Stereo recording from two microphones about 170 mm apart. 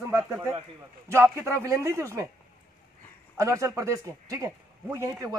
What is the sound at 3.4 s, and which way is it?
Speech, 20° right (ahead or behind).